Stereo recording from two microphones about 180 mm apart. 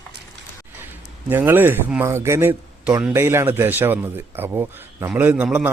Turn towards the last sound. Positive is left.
turn(degrees=-10)  # may be behind; listen again after turning